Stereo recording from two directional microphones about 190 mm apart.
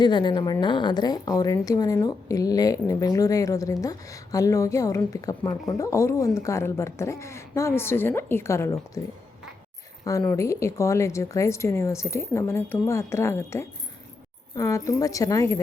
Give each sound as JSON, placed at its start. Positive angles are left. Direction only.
{"t": 0.0, "sound": "a woman's voice", "side_deg": 25}
{"t": 10.0, "sound": "a woman's voice", "side_deg": 20}